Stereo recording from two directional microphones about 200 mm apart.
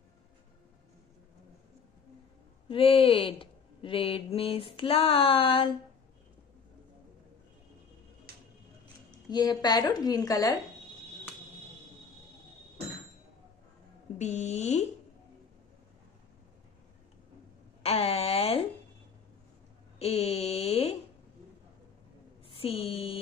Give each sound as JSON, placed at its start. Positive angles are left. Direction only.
{"t": 2.7, "sound": "speech", "side_deg": 30}
{"t": 8.3, "sound": "a sound", "side_deg": -50}
{"t": 9.3, "sound": "speech", "side_deg": 20}
{"t": 14.1, "sound": "speech", "side_deg": 35}
{"t": 17.8, "sound": "speech", "side_deg": 30}
{"t": 20.0, "sound": "speech", "side_deg": 30}
{"t": 22.5, "sound": "a sound", "side_deg": 30}